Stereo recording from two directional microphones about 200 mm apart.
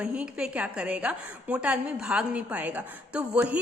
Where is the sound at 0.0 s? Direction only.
5° right (ahead or behind).